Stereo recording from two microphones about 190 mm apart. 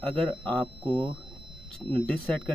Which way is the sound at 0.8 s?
25° right (ahead or behind).